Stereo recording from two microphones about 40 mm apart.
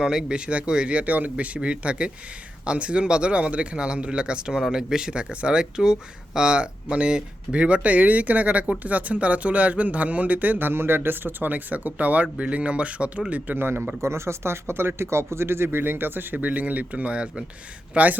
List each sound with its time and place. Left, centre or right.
0.0 s speech: centre
5.3 s speech: right
5.5 s speech: centre; by 10.7 s right
10.7 s speech: right
13.6 s speech: right
14.4 s speech: right
17.9 s speech: right